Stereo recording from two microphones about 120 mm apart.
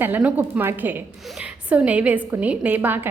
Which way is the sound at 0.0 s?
10° right (ahead or behind).